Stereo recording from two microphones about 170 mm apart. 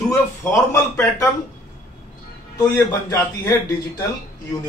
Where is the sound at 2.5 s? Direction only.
20° left (ahead or behind).